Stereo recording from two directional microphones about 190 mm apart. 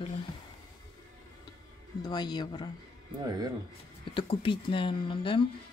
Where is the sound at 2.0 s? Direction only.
20° left (ahead or behind).